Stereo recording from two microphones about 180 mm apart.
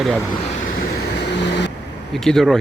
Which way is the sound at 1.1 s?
75° left (ahead or behind).